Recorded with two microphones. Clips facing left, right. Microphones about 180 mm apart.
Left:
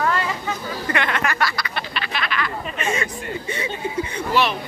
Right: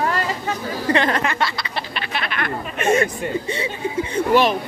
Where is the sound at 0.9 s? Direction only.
30° right (ahead or behind).